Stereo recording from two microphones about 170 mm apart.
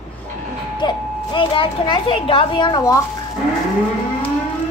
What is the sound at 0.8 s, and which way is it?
A child's voice, 30° left (ahead or behind).